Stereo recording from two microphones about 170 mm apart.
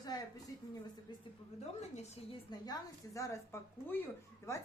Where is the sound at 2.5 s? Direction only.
20° left (ahead or behind).